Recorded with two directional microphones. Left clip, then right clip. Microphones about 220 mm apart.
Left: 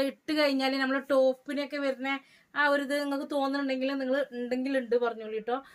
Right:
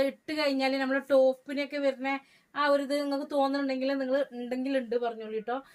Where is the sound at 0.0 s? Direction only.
25° left (ahead or behind).